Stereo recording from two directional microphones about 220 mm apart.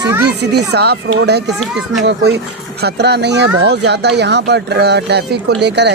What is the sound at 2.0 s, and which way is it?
Speech, 50° right (ahead or behind).